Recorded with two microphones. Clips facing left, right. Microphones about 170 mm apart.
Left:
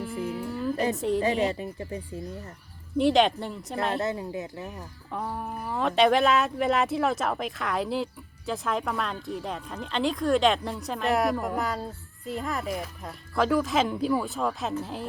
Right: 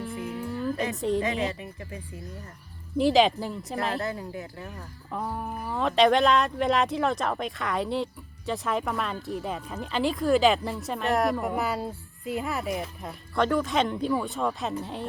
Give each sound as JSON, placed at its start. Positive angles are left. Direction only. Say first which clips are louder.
{"t": 0.0, "sound": "humming", "louder": "left 2 dB", "side_deg": 5}
{"t": 0.9, "sound": "speech", "louder": "even", "side_deg": 0}
{"t": 1.2, "sound": "speech", "louder": "left 3 dB", "side_deg": 35}
{"t": 3.0, "sound": "speech", "louder": "right 1 dB", "side_deg": 0}
{"t": 3.9, "sound": "speech", "louder": "left 2 dB", "side_deg": 20}
{"t": 5.1, "sound": "speech", "louder": "right 1 dB", "side_deg": 0}